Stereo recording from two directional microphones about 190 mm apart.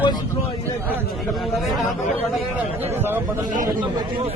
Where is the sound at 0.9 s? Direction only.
5° left (ahead or behind); by 3.2 s 10° right (ahead or behind).